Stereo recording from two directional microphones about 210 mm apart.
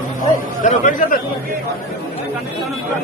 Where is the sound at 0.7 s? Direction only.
35° left (ahead or behind).